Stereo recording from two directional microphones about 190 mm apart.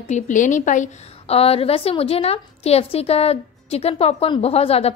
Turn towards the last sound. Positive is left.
turn(degrees=30)  # may be behind; listen again after turning